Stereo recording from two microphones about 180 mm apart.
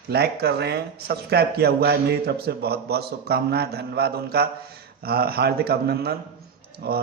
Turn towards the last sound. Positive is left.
turn(degrees=-60)  # may be behind; listen again after turning